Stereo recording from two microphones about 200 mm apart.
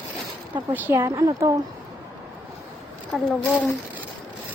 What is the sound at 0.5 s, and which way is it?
A woman's voice, 10° right (ahead or behind).